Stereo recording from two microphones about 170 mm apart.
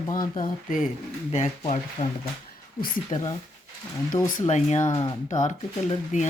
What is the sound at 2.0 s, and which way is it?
Speech, 45° left (ahead or behind).